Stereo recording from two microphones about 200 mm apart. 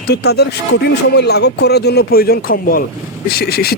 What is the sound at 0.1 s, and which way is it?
Speech, 55° left (ahead or behind).